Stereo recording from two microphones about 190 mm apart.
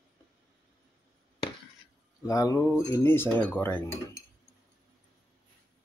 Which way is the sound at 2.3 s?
20° left (ahead or behind).